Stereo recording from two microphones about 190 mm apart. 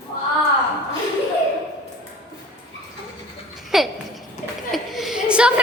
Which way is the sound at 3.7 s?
Centre (ahead or behind).